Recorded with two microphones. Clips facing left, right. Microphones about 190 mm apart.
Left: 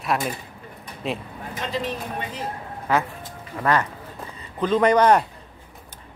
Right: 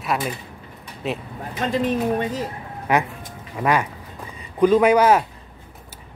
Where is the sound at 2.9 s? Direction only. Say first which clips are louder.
Right 2 dB; 15° right (ahead or behind).